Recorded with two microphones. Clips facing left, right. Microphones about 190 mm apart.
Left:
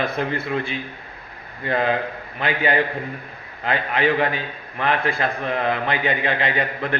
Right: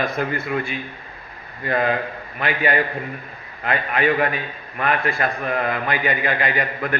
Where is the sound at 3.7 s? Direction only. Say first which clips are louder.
Even; 25° left (ahead or behind).